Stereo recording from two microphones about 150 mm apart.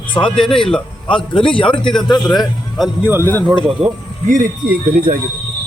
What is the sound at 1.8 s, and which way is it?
Speech, 5° left (ahead or behind).